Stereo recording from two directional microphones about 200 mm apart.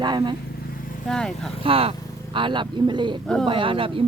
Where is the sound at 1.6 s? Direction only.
30° right (ahead or behind).